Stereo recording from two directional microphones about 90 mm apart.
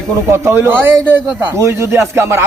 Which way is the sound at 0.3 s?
30° right (ahead or behind).